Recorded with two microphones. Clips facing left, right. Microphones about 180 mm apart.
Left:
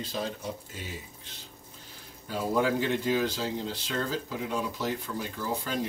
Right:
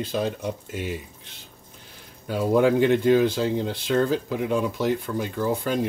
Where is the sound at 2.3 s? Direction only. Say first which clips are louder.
Right 7 dB; 65° right (ahead or behind).